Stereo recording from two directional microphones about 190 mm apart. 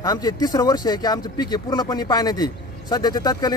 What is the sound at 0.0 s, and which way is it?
Speech, 20° left (ahead or behind).